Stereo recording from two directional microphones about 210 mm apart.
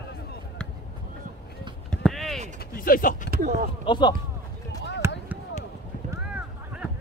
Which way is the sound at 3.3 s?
45° right (ahead or behind).